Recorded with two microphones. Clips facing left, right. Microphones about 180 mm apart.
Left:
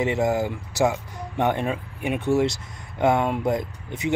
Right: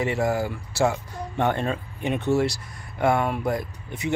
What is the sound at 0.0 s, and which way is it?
Speech, 20° left (ahead or behind).